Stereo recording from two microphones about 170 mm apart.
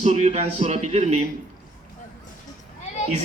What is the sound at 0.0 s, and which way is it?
A man's voice, 40° right (ahead or behind).